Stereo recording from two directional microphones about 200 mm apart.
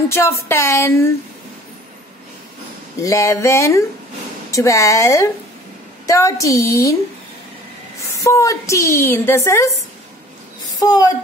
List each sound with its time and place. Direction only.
0.1 s a woman's voice: 15° left (ahead or behind)
3.0 s a woman's voice: 15° left (ahead or behind)
8.1 s a woman's voice: 15° left (ahead or behind)
10.8 s speech: 20° left (ahead or behind)